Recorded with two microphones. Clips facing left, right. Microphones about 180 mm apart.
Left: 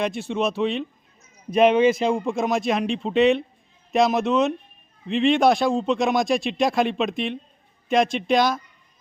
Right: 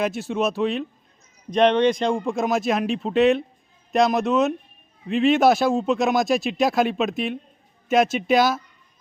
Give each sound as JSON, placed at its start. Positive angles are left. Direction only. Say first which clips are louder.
{"t": 0.0, "sound": "speech", "louder": "right 1 dB", "side_deg": 0}